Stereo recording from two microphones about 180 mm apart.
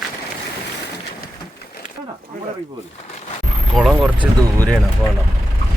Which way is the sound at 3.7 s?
Centre (ahead or behind).